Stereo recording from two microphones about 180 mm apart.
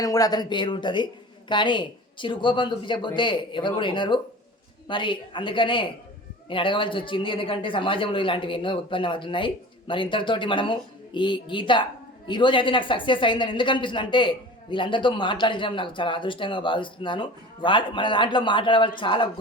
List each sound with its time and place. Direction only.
0.0 s speech: 20° left (ahead or behind)